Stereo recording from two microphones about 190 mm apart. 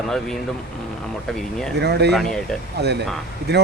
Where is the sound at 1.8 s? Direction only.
60° right (ahead or behind).